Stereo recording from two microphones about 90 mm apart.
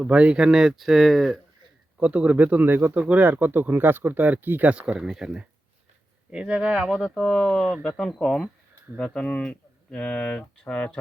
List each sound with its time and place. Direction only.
0.0 s speech: 15° right (ahead or behind)
2.0 s speech: 15° right (ahead or behind)
7.0 s speech: centre (ahead or behind)